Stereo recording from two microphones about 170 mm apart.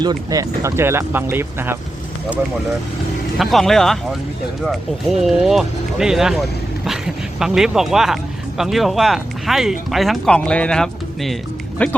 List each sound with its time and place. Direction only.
0.0 s speech: 20° right (ahead or behind)
3.3 s speech: centre (ahead or behind)